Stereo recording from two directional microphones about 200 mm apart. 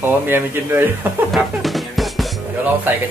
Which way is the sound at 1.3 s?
Centre (ahead or behind).